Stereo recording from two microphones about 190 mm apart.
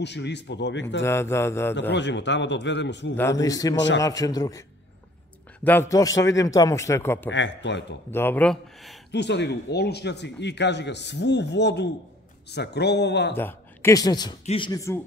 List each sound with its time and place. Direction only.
0.0 s a man's voice: 65° left (ahead or behind)
1.0 s speech: 15° left (ahead or behind)
1.8 s a man's voice: 70° left (ahead or behind)
3.2 s speech: 15° left (ahead or behind)
3.7 s a man's voice: 70° left (ahead or behind)
4.0 s a man's voice: 20° left (ahead or behind)
7.2 s a man's voice: 70° left (ahead or behind)
8.1 s speech: 10° left (ahead or behind)
9.1 s speech: 65° left (ahead or behind)
13.4 s speech: 10° left (ahead or behind)
14.4 s speech: 30° left (ahead or behind)
14.7 s speech: 15° left (ahead or behind)